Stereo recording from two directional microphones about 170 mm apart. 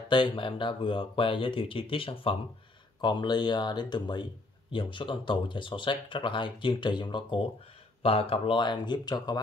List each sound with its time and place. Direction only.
0.1 s speech: 30° left (ahead or behind)